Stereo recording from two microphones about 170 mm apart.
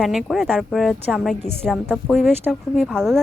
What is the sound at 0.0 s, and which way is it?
A woman's voice, centre (ahead or behind).